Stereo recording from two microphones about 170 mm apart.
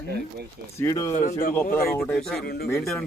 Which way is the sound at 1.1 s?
50° left (ahead or behind).